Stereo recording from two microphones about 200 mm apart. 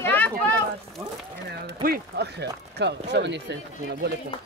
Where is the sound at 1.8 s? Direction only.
50° right (ahead or behind).